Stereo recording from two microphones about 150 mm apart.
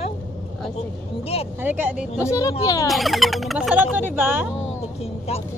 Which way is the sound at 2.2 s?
20° left (ahead or behind).